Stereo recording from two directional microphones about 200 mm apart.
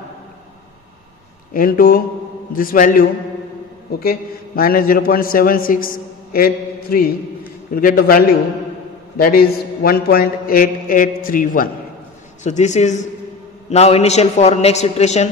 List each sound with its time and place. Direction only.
1.5 s a man's voice: 45° left (ahead or behind)
9.8 s a man's voice: 50° left (ahead or behind)